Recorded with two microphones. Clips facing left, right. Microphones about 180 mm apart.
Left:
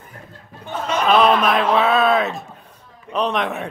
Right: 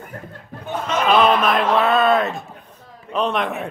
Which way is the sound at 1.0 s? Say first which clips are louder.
Left 1 dB; centre (ahead or behind).